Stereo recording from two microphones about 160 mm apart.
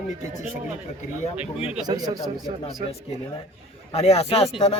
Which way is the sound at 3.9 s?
40° left (ahead or behind).